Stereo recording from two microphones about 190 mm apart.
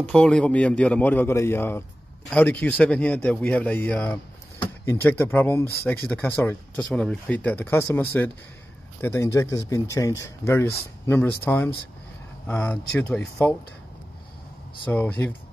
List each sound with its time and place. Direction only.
0.0 s a man's voice: 5° left (ahead or behind)
14.9 s a man's voice: 10° left (ahead or behind)